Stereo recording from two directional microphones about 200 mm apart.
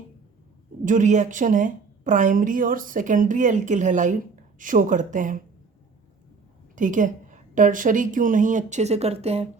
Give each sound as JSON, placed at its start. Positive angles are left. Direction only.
{"t": 0.9, "sound": "a woman's voice", "side_deg": -40}
{"t": 6.7, "sound": "a woman's voice", "side_deg": -40}